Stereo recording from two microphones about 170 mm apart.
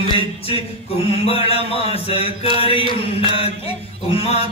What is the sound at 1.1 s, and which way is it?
A man's voice, 35° left (ahead or behind).